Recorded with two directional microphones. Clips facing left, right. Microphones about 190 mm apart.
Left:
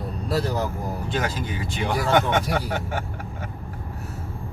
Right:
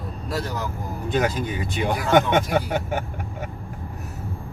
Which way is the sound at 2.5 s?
20° right (ahead or behind).